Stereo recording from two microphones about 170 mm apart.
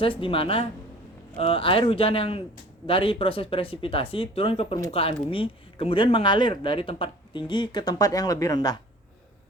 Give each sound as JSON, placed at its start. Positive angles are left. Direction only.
{"t": 0.0, "sound": "speech", "side_deg": 30}